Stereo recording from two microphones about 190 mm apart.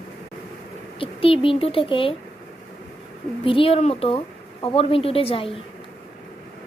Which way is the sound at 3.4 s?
30° left (ahead or behind).